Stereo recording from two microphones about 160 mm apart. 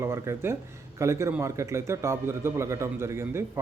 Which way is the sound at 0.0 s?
15° right (ahead or behind).